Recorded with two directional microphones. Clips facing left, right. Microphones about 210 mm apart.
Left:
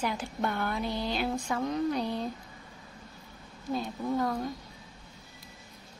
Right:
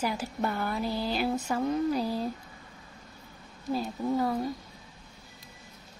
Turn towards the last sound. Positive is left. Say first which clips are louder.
# right 2 dB
turn(degrees=-10)  # may be behind; listen again after turning